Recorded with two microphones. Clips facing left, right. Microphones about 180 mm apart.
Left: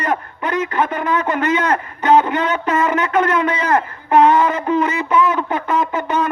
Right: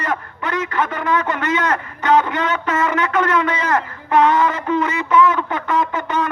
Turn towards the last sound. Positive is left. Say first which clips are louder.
# left 1 dB
turn(degrees=20)  # may be behind; listen again after turning